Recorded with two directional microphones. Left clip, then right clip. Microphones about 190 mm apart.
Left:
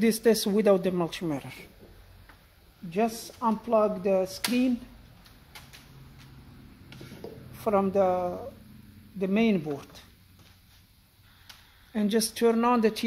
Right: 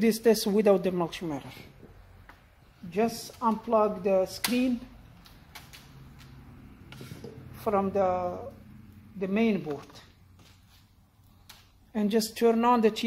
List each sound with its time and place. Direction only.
0.0 s speech: 20° left (ahead or behind)
2.9 s speech: 45° left (ahead or behind)
7.6 s a woman's voice: 45° left (ahead or behind)
11.9 s speech: 20° left (ahead or behind)